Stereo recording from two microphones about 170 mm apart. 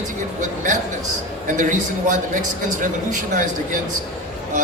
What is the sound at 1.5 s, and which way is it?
A man's voice, 50° right (ahead or behind).